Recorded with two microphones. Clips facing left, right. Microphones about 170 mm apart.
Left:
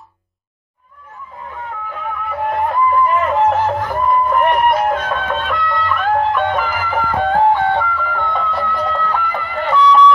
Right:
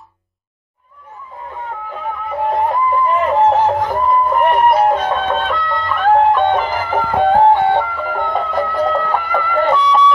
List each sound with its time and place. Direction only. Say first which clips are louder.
1.9 s a sound: right 1 dB; 20° right (ahead or behind)
4.3 s music: right 1 dB; 30° right (ahead or behind)
7.9 s music: right 2 dB; 40° right (ahead or behind)